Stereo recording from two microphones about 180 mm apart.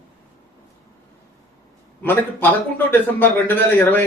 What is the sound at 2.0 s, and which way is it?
A man's voice, 10° left (ahead or behind).